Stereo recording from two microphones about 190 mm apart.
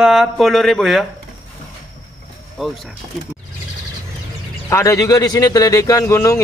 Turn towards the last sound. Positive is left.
turn(degrees=15)  # may be behind; listen again after turning